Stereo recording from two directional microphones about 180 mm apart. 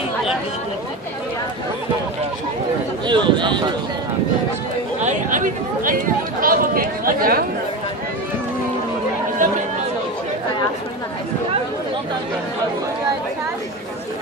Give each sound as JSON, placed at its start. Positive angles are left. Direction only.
{"t": 3.1, "sound": "speech", "side_deg": -25}
{"t": 5.0, "sound": "chatter", "side_deg": -45}
{"t": 9.4, "sound": "chatter", "side_deg": -45}